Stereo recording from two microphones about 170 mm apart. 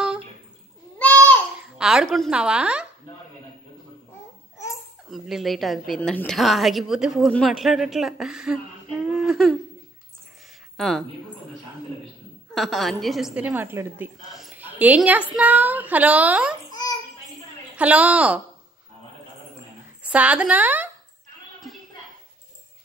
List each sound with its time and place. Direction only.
0.9 s a sound: 10° left (ahead or behind)
1.6 s speech: 5° right (ahead or behind)
5.1 s a woman's voice: centre (ahead or behind)
9.0 s humming: centre (ahead or behind)
10.8 s a woman's voice: centre (ahead or behind)
12.5 s a woman's voice: centre (ahead or behind)
16.7 s a sound: 25° left (ahead or behind)
17.7 s a woman's voice: 10° right (ahead or behind)
20.0 s speech: 10° right (ahead or behind)